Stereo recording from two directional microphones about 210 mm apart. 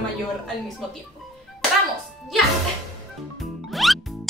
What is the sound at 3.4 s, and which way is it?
Music, centre (ahead or behind).